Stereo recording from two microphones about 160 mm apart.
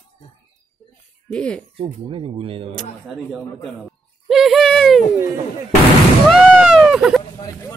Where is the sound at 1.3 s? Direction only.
5° left (ahead or behind).